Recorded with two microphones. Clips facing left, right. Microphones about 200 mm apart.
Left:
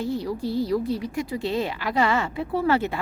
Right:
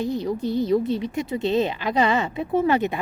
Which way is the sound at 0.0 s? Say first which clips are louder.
Right 2 dB; 20° right (ahead or behind).